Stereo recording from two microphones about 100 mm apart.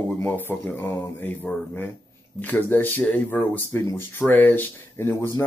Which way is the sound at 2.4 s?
20° left (ahead or behind).